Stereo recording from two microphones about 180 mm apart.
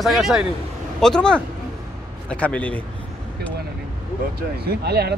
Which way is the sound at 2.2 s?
5° left (ahead or behind).